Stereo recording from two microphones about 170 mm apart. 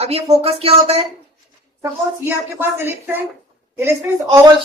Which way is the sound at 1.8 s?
15° right (ahead or behind).